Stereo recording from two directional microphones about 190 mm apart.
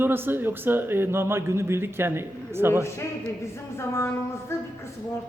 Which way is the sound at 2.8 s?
15° left (ahead or behind).